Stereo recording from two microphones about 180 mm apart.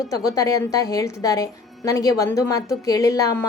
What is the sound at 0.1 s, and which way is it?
A woman's voice, 20° left (ahead or behind).